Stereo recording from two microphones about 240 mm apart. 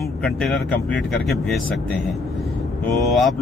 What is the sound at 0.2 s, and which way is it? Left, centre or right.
Speech, centre.